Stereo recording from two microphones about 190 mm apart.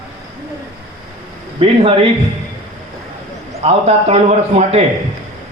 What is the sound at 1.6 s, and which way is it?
Speech, 30° right (ahead or behind).